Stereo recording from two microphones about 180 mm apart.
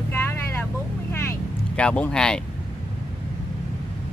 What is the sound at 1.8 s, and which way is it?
Speech, 5° left (ahead or behind).